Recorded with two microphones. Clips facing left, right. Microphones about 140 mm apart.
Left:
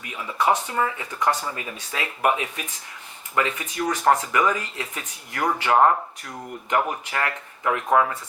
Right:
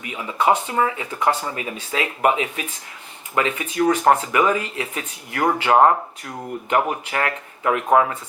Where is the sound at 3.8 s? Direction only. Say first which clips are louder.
Right 4 dB; 20° right (ahead or behind).